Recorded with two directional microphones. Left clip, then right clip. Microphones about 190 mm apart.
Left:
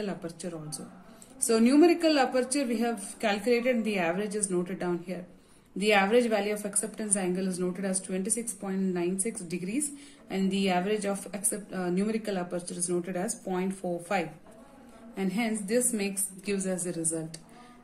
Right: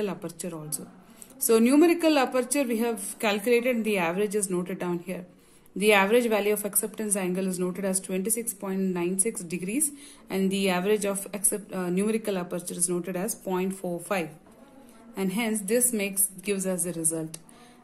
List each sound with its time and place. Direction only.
0.0 s a woman's voice: 45° right (ahead or behind)
10.2 s a woman's voice: 45° right (ahead or behind)